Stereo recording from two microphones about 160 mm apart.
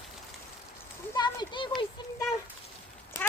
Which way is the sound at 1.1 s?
25° left (ahead or behind).